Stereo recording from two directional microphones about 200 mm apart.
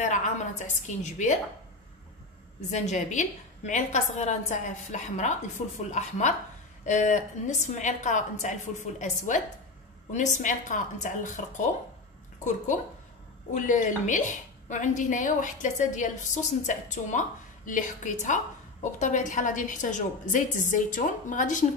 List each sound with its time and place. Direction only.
0.0 s a woman's voice: 35° left (ahead or behind)
2.7 s a woman's voice: 35° left (ahead or behind)
13.5 s a woman's voice: 40° left (ahead or behind)